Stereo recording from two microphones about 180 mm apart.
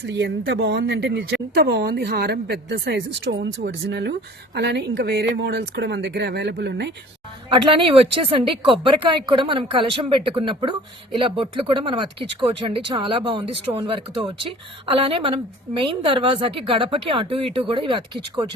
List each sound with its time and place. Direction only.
0.0 s speech: 75° right (ahead or behind)
7.5 s speech: 30° right (ahead or behind)